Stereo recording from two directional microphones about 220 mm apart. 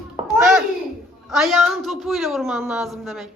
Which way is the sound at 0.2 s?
20° right (ahead or behind).